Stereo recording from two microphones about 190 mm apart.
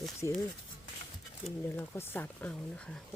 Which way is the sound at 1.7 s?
10° left (ahead or behind).